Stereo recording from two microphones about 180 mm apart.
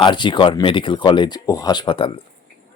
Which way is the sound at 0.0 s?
25° left (ahead or behind).